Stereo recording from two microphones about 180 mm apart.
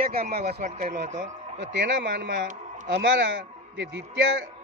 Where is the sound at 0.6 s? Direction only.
40° right (ahead or behind).